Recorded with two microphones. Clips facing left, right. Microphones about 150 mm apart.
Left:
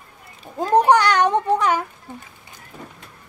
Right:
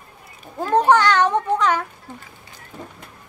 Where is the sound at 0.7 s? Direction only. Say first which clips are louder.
Even; 15° left (ahead or behind).